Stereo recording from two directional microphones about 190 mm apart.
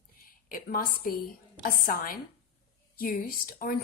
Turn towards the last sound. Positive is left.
turn(degrees=50)  # may be behind; listen again after turning